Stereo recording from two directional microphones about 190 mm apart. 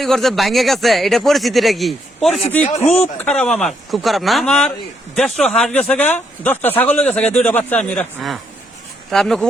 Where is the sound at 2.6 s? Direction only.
35° left (ahead or behind).